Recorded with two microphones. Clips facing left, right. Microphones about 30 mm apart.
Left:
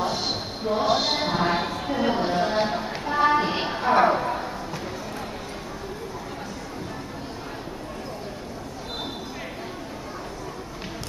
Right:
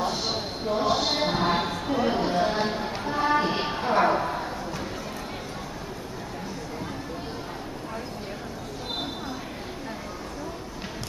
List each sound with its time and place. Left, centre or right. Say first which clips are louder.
0.7 s basketball bounce: left 2 dB; centre
0.9 s music: left 2 dB; centre
1.2 s a sound: left 1 dB; centre
2.4 s speech: left 2 dB; centre
2.8 s music: left 4 dB; centre
4.0 s a sound: left 2 dB; centre